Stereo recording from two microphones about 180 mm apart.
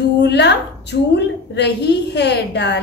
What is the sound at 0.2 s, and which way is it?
A woman's voice, 70° left (ahead or behind).